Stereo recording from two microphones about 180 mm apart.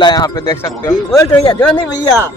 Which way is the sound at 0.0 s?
25° left (ahead or behind).